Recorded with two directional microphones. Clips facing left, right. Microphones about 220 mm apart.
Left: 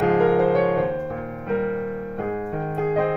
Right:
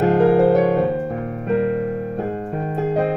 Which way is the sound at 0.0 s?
30° right (ahead or behind).